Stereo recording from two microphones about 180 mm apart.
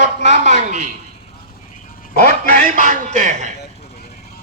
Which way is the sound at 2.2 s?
45° right (ahead or behind).